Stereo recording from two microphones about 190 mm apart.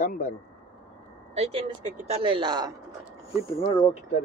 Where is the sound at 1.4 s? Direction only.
35° right (ahead or behind).